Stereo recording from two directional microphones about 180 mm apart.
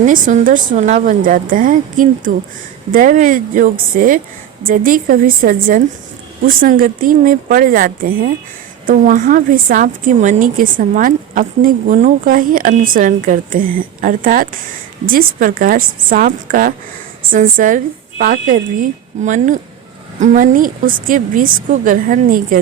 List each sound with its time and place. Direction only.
0.0 s a woman's voice: 45° right (ahead or behind)